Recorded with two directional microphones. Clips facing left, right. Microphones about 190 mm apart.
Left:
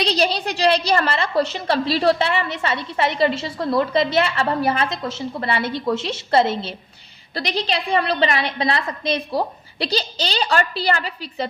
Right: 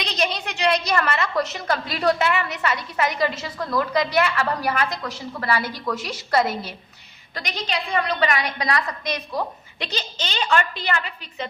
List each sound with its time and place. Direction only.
0.0 s a woman's voice: 35° left (ahead or behind)